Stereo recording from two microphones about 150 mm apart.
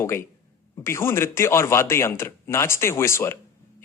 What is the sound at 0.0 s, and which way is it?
Speech, 15° left (ahead or behind).